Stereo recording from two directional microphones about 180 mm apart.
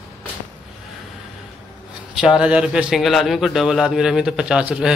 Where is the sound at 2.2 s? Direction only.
5° right (ahead or behind).